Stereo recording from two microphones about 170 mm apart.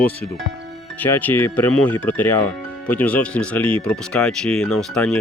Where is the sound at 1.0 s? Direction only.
10° left (ahead or behind).